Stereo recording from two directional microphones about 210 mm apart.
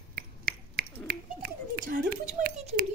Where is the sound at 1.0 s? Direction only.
45° right (ahead or behind).